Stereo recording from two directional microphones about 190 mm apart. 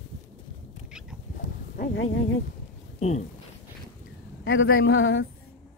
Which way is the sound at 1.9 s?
90° left.